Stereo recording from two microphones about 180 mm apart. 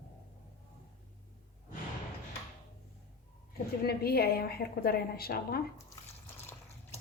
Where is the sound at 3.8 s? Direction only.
60° left (ahead or behind).